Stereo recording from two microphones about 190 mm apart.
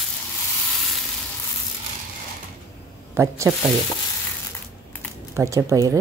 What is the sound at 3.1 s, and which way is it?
Speech, 15° right (ahead or behind).